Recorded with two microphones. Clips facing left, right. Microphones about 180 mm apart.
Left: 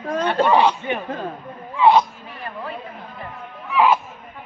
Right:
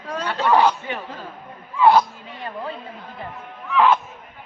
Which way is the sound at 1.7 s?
Centre (ahead or behind).